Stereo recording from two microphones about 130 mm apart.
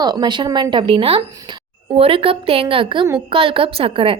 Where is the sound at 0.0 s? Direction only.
35° right (ahead or behind).